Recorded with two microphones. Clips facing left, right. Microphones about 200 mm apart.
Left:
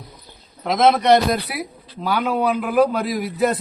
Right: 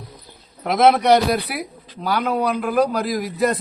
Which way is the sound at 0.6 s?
10° right (ahead or behind).